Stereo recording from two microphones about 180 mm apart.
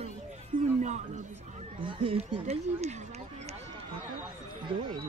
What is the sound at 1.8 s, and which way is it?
Speech, 30° right (ahead or behind).